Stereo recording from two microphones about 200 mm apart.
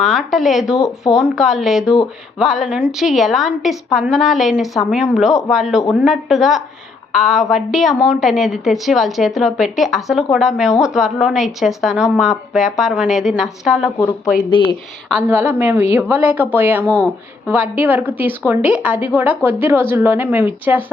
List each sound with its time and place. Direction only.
0.0 s a woman's voice: centre (ahead or behind)
14.5 s speech: 25° left (ahead or behind)
15.1 s a woman's voice: 10° right (ahead or behind)